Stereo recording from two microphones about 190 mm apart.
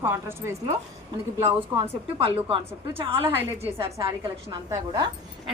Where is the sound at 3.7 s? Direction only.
15° right (ahead or behind).